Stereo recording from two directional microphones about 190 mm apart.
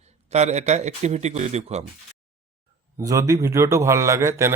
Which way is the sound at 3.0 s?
15° right (ahead or behind).